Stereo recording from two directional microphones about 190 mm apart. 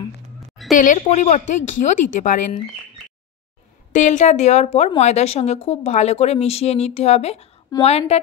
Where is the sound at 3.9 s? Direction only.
40° left (ahead or behind).